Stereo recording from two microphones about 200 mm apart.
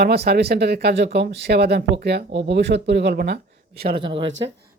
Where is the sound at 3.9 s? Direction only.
25° right (ahead or behind).